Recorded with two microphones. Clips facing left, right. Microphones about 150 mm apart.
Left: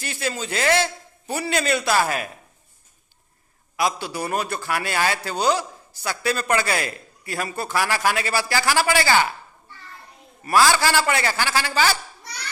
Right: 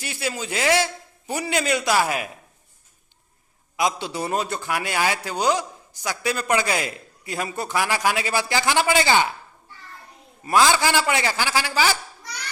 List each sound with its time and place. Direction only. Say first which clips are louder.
0.0 s a man's voice: left 1 dB; 15° right (ahead or behind)
3.8 s a man's voice: even; 20° right (ahead or behind)
10.4 s a man's voice: even; 20° right (ahead or behind)